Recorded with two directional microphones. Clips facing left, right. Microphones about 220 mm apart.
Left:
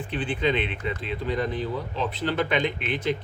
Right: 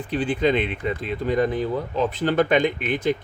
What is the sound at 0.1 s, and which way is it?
Speech, 40° right (ahead or behind).